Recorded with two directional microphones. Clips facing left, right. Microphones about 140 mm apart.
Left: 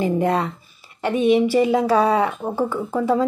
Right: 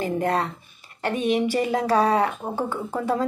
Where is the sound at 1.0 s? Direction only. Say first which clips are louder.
Left 6 dB; 45° right (ahead or behind).